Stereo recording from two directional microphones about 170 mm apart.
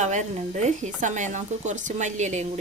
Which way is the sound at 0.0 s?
45° right (ahead or behind).